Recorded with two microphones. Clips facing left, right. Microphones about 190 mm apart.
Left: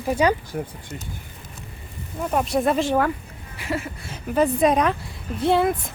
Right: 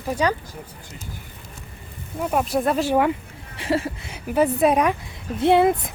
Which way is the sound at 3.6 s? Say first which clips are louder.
Right 5 dB; 30° right (ahead or behind).